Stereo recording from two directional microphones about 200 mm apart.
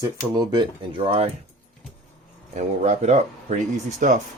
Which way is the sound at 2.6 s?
35° right (ahead or behind).